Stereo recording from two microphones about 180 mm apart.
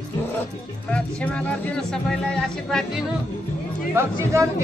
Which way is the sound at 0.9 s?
5° left (ahead or behind).